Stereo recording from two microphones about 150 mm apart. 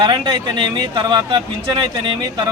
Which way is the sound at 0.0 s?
30° right (ahead or behind).